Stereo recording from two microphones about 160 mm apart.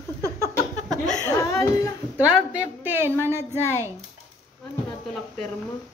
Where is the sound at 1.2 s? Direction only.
15° left (ahead or behind).